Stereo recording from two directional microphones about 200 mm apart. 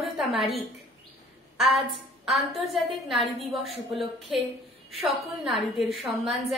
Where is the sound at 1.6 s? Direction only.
Centre (ahead or behind).